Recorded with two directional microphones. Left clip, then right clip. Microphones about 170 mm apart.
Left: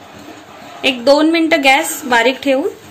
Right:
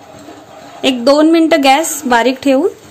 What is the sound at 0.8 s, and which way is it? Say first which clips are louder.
A woman's voice: right 2 dB; 50° right (ahead or behind).